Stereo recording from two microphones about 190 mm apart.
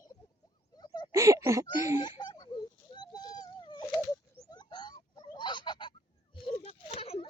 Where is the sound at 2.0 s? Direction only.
25° left (ahead or behind).